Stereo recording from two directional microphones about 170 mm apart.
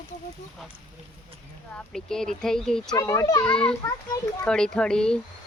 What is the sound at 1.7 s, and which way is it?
Speech, 5° left (ahead or behind).